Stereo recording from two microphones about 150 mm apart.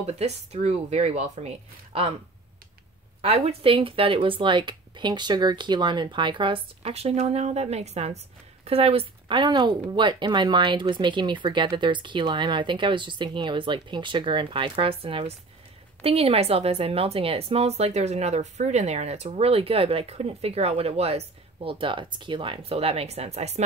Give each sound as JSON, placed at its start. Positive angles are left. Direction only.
{"t": 0.0, "sound": "speech", "side_deg": -45}
{"t": 3.2, "sound": "a woman's voice", "side_deg": -40}